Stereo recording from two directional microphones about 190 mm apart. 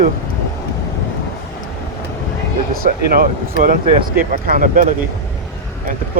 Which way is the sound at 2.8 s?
50° right (ahead or behind).